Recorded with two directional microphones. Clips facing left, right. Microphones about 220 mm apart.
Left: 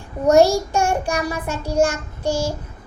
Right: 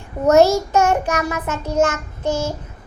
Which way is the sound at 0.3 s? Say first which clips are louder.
Right 1 dB; 15° left (ahead or behind).